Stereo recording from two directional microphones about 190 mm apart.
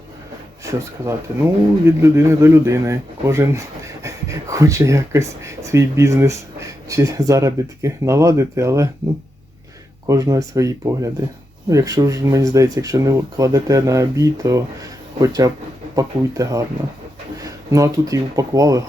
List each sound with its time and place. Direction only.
0.6 s speech: 15° right (ahead or behind)
10.1 s speech: 15° right (ahead or behind)